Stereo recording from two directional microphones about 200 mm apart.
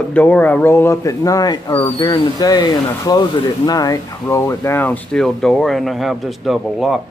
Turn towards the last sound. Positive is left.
turn(degrees=0)  # may be behind; listen again after turning